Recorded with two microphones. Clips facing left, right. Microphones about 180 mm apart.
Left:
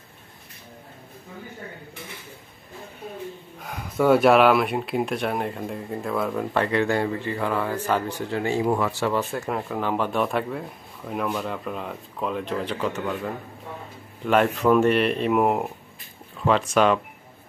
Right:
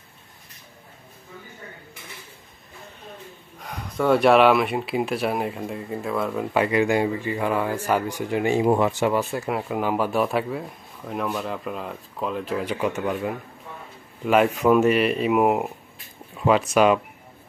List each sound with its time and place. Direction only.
3.6 s speech: 5° left (ahead or behind)
16.3 s a sound: 10° right (ahead or behind)
16.7 s speech: 10° right (ahead or behind)